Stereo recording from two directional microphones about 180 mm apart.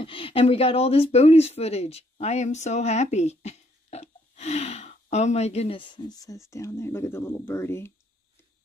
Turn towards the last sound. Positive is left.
turn(degrees=15)  # may be behind; listen again after turning